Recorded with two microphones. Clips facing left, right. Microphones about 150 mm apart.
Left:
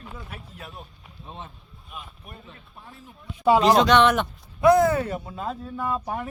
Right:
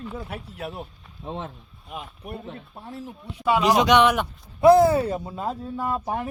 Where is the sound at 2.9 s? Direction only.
80° right.